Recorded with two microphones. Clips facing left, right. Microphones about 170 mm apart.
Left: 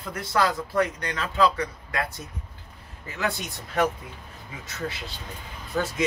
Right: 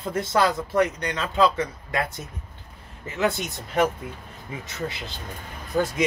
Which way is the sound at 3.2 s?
20° right (ahead or behind).